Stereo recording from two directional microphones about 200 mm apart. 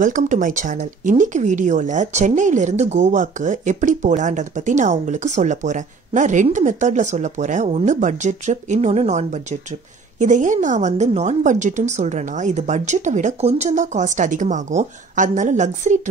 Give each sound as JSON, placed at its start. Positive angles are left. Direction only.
{"t": 0.0, "sound": "speech", "side_deg": -40}